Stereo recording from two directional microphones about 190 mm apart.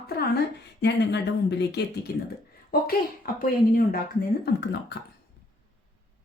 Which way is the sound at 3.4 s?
50° left (ahead or behind).